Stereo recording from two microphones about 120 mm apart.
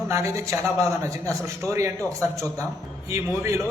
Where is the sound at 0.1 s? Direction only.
25° right (ahead or behind).